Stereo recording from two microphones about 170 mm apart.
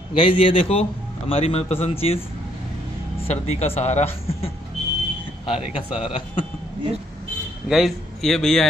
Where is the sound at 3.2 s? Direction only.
40° left (ahead or behind).